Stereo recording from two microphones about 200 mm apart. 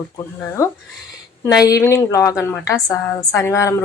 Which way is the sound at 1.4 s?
20° left (ahead or behind).